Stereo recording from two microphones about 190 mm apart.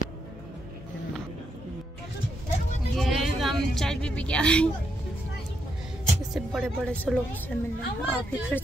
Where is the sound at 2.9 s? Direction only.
Centre (ahead or behind).